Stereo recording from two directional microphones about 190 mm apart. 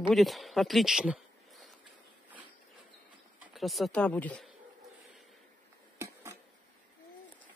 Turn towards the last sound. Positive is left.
turn(degrees=-15)  # may be behind; listen again after turning